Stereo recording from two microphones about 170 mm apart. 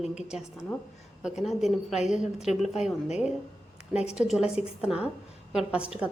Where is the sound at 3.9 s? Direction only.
40° left (ahead or behind).